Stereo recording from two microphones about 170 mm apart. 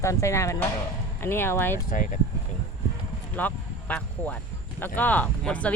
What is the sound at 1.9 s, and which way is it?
Speech, 50° left (ahead or behind).